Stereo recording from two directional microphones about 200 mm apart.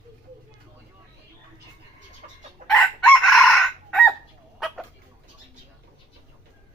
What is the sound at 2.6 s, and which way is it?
Chicken, centre (ahead or behind).